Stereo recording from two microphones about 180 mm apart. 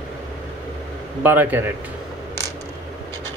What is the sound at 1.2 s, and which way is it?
Speech, 10° right (ahead or behind).